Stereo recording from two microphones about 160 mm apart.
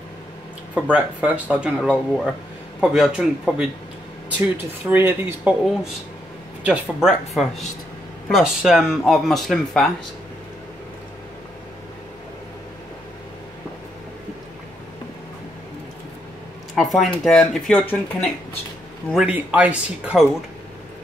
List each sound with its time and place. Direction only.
0.7 s speech: 10° right (ahead or behind)
4.8 s speech: 15° right (ahead or behind)
6.6 s speech: 5° right (ahead or behind)
16.7 s speech: centre (ahead or behind)
19.1 s speech: 10° right (ahead or behind)